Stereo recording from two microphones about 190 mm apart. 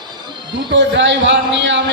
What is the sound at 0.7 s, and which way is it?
A man's voice, 70° right (ahead or behind).